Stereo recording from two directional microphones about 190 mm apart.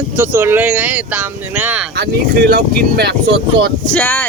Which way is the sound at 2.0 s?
55° right (ahead or behind).